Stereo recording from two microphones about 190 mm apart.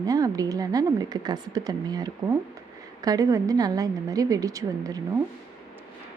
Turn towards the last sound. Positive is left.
turn(degrees=-20)  # may be behind; listen again after turning